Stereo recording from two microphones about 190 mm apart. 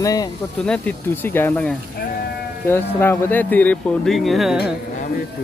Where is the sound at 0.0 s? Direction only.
20° left (ahead or behind).